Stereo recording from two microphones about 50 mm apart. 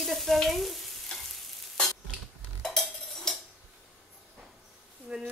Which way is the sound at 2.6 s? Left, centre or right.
Centre.